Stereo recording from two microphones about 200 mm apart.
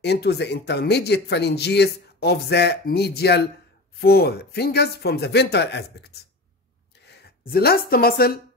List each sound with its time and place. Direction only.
0.0 s speech: 55° left (ahead or behind)